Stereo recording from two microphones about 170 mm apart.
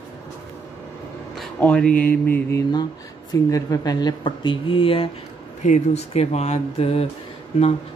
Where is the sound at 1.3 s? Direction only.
5° left (ahead or behind).